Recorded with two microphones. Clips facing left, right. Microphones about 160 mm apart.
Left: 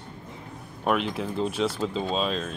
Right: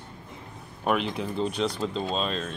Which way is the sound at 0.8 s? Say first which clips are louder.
Left 1 dB; centre (ahead or behind).